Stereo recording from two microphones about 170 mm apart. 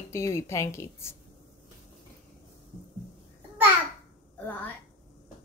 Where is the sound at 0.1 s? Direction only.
15° left (ahead or behind).